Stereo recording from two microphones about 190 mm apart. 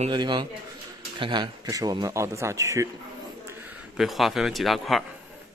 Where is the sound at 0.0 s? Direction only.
25° right (ahead or behind).